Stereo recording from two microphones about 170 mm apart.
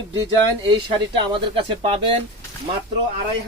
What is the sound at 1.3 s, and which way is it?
Speech, 30° right (ahead or behind).